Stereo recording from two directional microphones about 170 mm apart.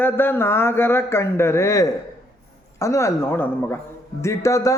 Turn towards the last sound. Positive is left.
turn(degrees=20)  # may be behind; listen again after turning